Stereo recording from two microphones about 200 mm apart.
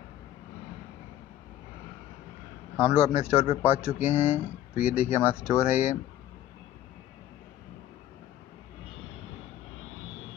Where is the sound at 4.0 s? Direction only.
10° right (ahead or behind).